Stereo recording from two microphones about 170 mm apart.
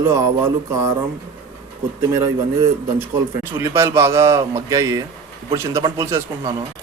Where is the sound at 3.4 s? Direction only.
15° right (ahead or behind).